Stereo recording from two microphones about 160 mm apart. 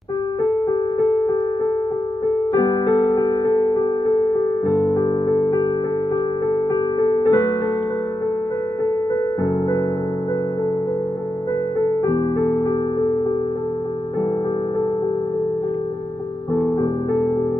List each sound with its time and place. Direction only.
2.5 s music: 25° left (ahead or behind)
4.9 s music: 25° left (ahead or behind)
7.2 s music: 20° left (ahead or behind)